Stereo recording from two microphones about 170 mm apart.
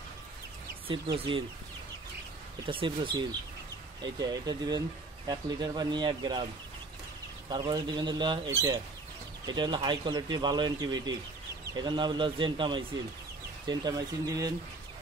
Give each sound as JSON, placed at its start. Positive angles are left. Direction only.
{"t": 0.8, "sound": "speech", "side_deg": -30}
{"t": 2.6, "sound": "speech", "side_deg": -30}
{"t": 7.4, "sound": "speech", "side_deg": -25}